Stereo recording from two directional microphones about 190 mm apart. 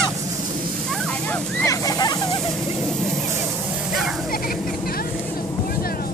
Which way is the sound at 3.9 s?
Centre (ahead or behind).